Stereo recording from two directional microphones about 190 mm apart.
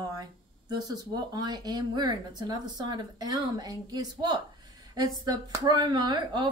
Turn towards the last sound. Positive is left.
turn(degrees=-20)  # may be behind; listen again after turning